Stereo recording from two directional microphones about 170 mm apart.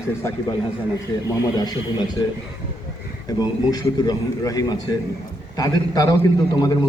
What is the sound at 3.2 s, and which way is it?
A man's voice, 20° left (ahead or behind).